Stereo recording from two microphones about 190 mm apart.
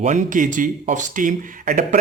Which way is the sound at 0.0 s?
40° right (ahead or behind).